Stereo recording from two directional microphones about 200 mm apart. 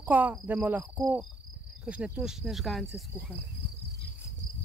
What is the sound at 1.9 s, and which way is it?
Speech, 5° right (ahead or behind).